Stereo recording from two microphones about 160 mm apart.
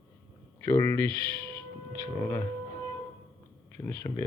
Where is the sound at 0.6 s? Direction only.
15° left (ahead or behind).